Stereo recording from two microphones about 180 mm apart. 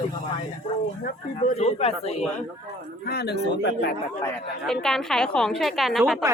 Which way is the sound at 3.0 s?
60° left (ahead or behind).